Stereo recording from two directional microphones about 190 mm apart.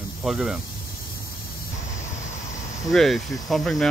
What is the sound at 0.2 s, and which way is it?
Speech, 5° right (ahead or behind).